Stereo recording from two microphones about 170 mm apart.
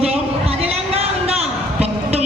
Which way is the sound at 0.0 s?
35° right (ahead or behind).